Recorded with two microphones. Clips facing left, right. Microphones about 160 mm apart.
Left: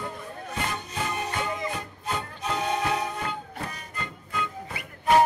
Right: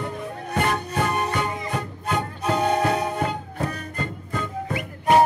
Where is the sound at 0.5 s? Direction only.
60° right (ahead or behind).